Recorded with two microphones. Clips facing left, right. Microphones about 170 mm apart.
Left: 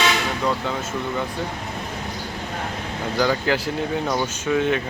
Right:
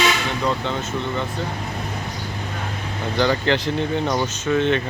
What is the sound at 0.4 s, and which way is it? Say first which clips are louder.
Speech: right 2 dB; 5° left (ahead or behind).